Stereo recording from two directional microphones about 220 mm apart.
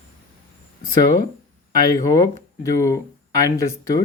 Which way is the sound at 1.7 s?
15° left (ahead or behind).